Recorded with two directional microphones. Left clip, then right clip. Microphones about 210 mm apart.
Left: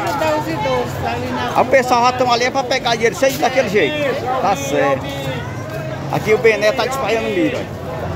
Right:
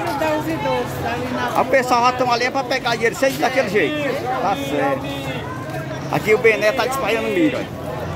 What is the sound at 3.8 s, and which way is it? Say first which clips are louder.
Speech: left 3 dB; 15° left (ahead or behind).